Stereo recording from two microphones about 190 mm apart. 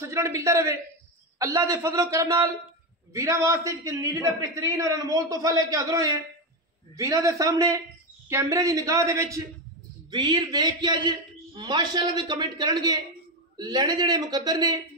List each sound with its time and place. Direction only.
0.0 s a man's voice: 15° right (ahead or behind)